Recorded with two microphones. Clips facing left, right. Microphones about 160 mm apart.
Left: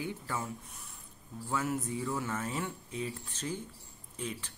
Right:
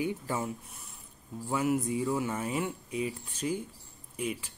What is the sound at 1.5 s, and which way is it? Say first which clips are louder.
Mechanisms: right 5 dB; 15° right (ahead or behind).